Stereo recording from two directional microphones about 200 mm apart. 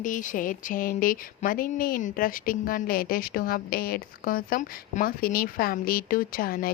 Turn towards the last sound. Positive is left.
turn(degrees=45)  # may be behind; listen again after turning